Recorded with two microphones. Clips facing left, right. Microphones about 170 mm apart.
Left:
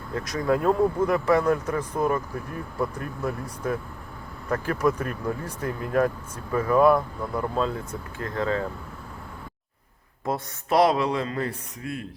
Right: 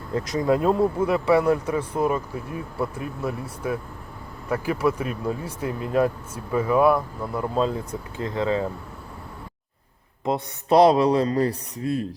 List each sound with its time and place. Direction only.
0.1 s speech: 20° right (ahead or behind); by 7.5 s 5° right (ahead or behind)
8.2 s speech: 20° right (ahead or behind)
10.2 s speech: 25° right (ahead or behind)